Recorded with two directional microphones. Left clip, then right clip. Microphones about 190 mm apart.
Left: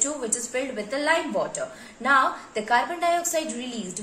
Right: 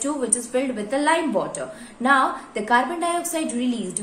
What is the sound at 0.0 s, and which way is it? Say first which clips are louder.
A woman's voice: right 3 dB; 20° right (ahead or behind).